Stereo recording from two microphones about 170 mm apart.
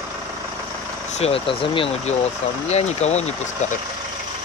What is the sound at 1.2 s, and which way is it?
Speech, 35° left (ahead or behind).